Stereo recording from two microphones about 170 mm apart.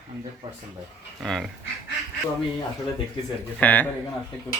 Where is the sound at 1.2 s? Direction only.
Centre (ahead or behind).